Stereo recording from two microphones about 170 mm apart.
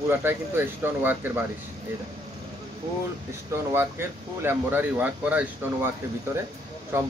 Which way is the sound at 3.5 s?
15° right (ahead or behind).